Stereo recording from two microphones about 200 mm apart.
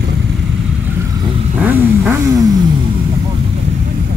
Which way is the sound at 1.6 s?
10° right (ahead or behind).